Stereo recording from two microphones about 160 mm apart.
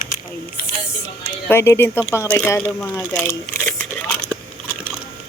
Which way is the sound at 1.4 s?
15° left (ahead or behind).